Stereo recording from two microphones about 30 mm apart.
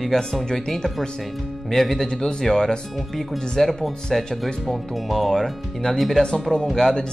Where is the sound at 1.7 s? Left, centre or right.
Centre.